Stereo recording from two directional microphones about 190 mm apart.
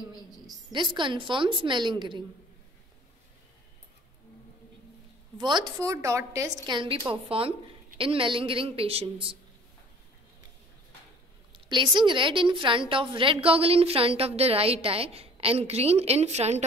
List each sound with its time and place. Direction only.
0.7 s a woman's voice: 25° right (ahead or behind)
5.4 s a woman's voice: 25° right (ahead or behind)
11.5 s a woman's voice: 25° right (ahead or behind)